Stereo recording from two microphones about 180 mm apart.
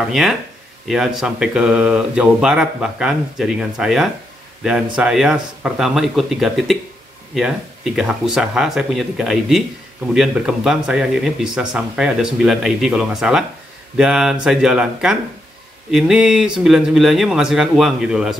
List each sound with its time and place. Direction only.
0.1 s speech: centre (ahead or behind)